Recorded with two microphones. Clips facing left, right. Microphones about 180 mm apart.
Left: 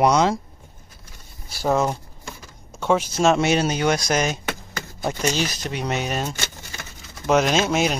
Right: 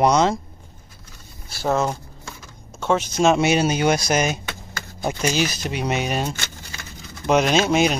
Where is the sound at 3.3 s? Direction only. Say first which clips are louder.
Right 1 dB; 10° right (ahead or behind).